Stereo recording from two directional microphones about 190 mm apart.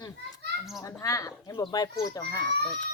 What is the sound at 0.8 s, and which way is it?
Speech, 15° left (ahead or behind).